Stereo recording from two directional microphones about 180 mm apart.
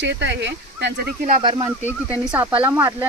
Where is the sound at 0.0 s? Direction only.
80° right.